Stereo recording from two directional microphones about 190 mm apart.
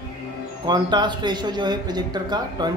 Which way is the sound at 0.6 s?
25° right (ahead or behind).